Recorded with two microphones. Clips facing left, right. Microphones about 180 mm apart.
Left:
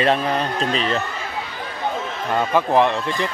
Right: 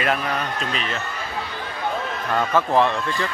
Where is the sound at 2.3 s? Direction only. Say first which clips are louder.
Left 2 dB; 15° left (ahead or behind).